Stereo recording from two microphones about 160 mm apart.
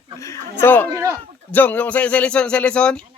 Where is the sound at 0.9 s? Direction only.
20° right (ahead or behind).